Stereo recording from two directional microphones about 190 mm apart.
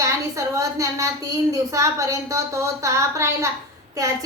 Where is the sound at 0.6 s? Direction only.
15° right (ahead or behind).